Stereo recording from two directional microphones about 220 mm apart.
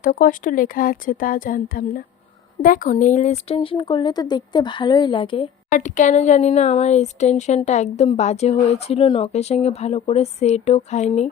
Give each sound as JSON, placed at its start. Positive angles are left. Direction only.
{"t": 0.0, "sound": "speech", "side_deg": 40}
{"t": 5.7, "sound": "speech", "side_deg": 35}